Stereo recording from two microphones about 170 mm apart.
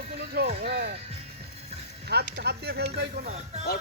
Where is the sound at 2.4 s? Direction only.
70° right (ahead or behind).